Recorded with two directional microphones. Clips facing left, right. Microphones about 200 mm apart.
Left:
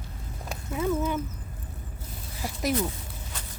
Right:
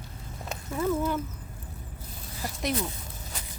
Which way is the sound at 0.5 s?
10° left (ahead or behind).